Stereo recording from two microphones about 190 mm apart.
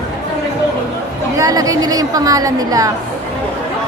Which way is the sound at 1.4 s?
20° right (ahead or behind).